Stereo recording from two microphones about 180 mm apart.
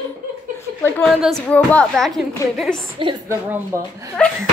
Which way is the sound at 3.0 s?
30° right (ahead or behind).